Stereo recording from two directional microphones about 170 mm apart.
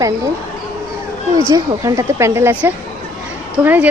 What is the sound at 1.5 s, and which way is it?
A woman's voice, 20° right (ahead or behind).